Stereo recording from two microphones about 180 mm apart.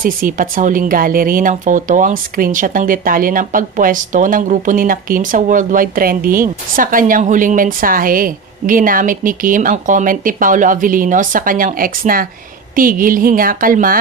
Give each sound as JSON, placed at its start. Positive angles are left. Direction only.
{"t": 0.0, "sound": "speech", "side_deg": -50}